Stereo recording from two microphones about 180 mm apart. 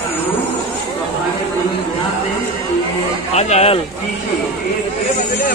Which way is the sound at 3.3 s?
35° left (ahead or behind).